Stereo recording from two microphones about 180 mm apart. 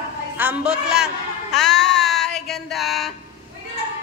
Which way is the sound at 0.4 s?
10° right (ahead or behind).